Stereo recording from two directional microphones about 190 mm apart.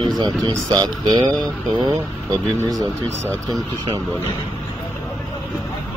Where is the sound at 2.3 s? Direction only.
20° right (ahead or behind).